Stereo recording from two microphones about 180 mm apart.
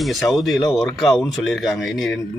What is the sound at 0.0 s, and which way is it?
Speech, centre (ahead or behind).